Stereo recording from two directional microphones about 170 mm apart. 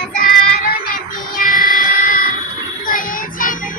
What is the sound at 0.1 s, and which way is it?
Child singing, 55° left (ahead or behind).